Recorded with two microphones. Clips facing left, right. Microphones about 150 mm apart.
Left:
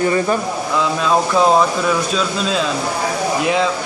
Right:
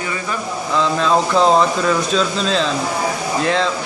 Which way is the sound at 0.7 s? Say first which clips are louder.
Right 1 dB; 10° left (ahead or behind).